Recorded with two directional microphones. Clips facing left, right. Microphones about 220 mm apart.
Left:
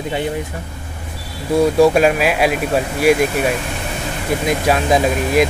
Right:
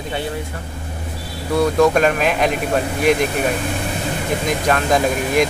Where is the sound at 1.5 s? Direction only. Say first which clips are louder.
Left 3 dB; 10° left (ahead or behind).